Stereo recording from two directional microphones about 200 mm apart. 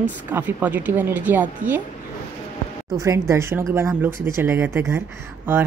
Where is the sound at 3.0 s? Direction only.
15° right (ahead or behind).